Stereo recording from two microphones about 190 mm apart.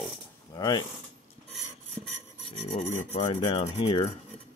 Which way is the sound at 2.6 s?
35° left (ahead or behind).